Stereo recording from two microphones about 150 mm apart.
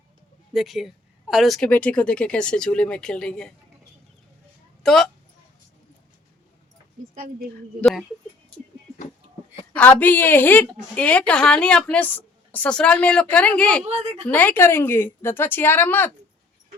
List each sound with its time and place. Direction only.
0.5 s speech: centre (ahead or behind)
4.8 s speech: 5° left (ahead or behind)
9.7 s a woman's voice: 10° left (ahead or behind)
13.8 s a woman's voice: 45° right (ahead or behind)
14.3 s a woman's voice: 15° left (ahead or behind)